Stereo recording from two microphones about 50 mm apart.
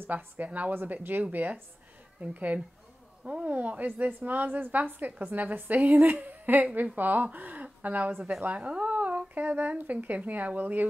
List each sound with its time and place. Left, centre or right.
0.0 s a woman's voice: right